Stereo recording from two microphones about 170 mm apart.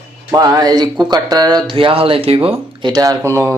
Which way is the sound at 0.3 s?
20° right (ahead or behind).